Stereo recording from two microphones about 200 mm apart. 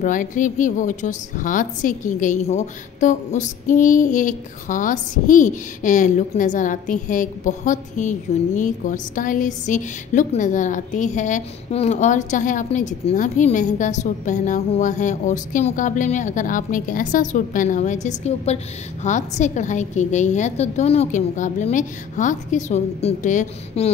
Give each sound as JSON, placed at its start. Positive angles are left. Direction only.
{"t": 0.0, "sound": "female singing", "side_deg": 40}